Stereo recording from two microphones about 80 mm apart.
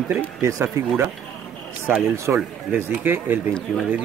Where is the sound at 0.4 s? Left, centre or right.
Right.